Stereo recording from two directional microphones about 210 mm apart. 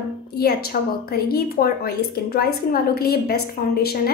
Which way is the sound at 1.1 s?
45° left (ahead or behind).